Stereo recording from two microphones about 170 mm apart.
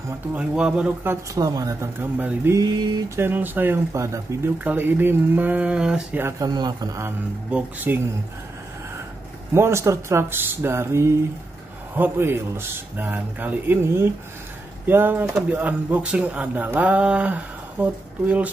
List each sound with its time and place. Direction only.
0.3 s speech: 5° right (ahead or behind)
1.3 s speech: 20° right (ahead or behind)
6.5 s speech: 25° right (ahead or behind)
9.5 s speech: 15° right (ahead or behind)